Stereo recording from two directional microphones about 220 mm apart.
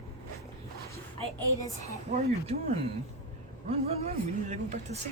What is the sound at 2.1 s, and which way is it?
Speech, 30° right (ahead or behind).